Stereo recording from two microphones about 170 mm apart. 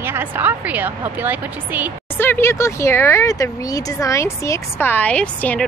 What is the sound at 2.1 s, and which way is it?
Speech, 15° left (ahead or behind).